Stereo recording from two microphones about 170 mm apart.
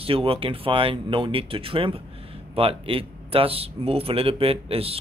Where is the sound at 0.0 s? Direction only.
35° right (ahead or behind).